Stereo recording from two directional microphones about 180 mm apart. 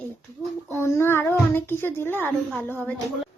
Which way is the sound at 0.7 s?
15° left (ahead or behind).